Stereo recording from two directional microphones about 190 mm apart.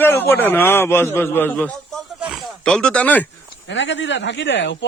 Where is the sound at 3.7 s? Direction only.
70° left (ahead or behind).